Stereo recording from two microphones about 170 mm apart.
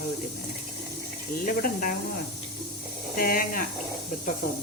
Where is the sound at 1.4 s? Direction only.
55° left (ahead or behind).